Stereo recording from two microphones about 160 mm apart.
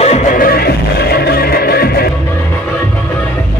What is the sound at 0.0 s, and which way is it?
Music, 45° left (ahead or behind).